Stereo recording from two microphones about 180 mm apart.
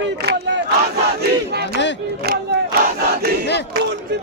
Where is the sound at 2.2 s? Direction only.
60° right (ahead or behind).